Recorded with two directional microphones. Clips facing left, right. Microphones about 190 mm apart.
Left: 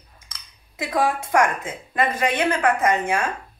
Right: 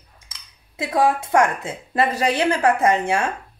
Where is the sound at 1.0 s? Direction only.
30° right (ahead or behind).